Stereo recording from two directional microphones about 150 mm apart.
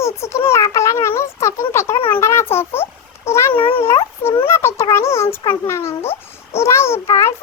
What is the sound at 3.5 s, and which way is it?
Speech, 35° left (ahead or behind).